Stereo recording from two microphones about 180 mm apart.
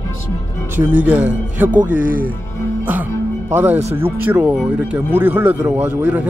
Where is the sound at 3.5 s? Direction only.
10° right (ahead or behind).